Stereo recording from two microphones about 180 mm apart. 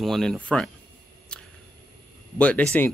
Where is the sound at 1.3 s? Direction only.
5° left (ahead or behind).